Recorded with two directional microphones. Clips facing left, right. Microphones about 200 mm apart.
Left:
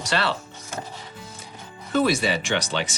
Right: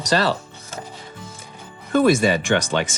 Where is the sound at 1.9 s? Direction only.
50° right (ahead or behind).